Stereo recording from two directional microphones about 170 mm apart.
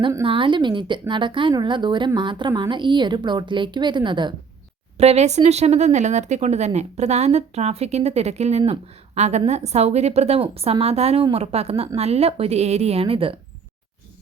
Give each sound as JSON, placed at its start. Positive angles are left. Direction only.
{"t": 0.1, "sound": "speech", "side_deg": -30}
{"t": 4.9, "sound": "speech", "side_deg": -40}